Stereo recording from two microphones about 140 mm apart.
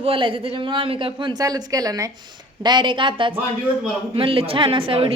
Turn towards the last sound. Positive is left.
turn(degrees=-40)  # may be behind; listen again after turning